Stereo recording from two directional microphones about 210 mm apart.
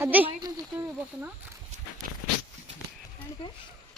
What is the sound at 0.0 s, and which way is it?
Speech, 10° right (ahead or behind).